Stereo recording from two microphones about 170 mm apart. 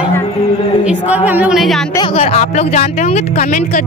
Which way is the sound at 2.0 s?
35° left (ahead or behind).